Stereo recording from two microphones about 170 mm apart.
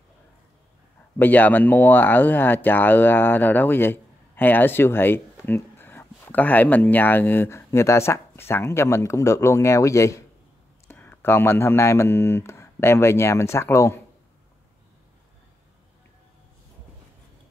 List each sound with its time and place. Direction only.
1.1 s speech: 10° left (ahead or behind)